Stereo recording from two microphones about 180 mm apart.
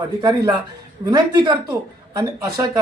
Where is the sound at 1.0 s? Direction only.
20° right (ahead or behind).